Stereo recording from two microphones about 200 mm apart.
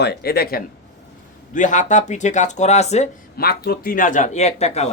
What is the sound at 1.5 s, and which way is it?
Speech, 40° left (ahead or behind).